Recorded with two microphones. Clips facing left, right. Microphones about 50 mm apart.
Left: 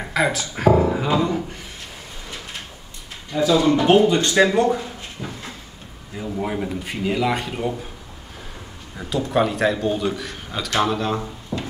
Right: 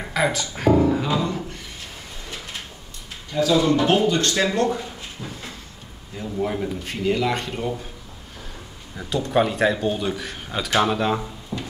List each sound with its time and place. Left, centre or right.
0.0 s speech: centre
3.4 s speech: centre
5.2 s cupboard open or close: centre
6.1 s speech: centre
8.9 s speech: centre
11.5 s a sound: centre